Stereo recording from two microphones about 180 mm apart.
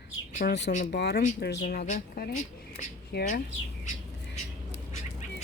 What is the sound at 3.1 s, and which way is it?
Speech, 65° left (ahead or behind).